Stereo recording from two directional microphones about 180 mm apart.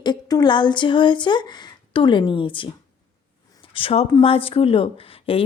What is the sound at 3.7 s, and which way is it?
Speech, 30° left (ahead or behind).